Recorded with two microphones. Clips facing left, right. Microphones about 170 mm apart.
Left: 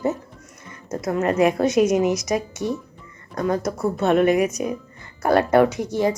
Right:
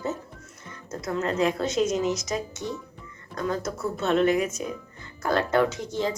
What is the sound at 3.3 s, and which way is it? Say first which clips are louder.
A woman's voice: left 6 dB; 55° left (ahead or behind).